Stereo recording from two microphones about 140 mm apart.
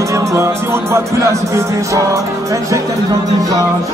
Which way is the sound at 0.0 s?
20° right (ahead or behind).